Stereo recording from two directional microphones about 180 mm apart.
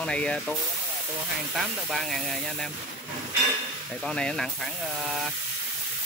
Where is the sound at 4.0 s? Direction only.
5° left (ahead or behind).